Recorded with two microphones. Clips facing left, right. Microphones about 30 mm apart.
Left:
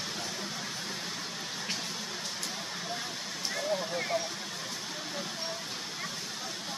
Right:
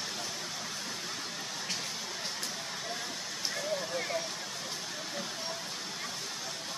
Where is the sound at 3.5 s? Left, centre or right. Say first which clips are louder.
Left 3 dB; centre.